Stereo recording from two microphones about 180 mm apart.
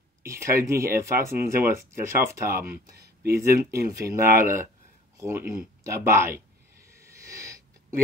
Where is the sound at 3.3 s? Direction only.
15° right (ahead or behind).